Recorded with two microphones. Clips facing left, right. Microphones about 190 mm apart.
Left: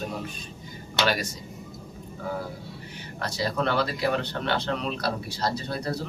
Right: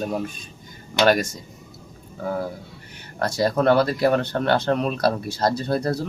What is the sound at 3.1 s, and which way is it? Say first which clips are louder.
Speech: right 7 dB; 50° right (ahead or behind).